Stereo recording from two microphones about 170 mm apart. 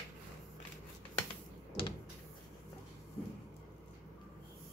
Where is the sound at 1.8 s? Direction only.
30° left (ahead or behind).